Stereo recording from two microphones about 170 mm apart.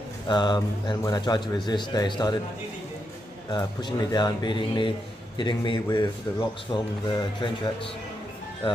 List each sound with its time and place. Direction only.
0.3 s a man's voice: 25° left (ahead or behind)
3.5 s a man's voice: 25° left (ahead or behind)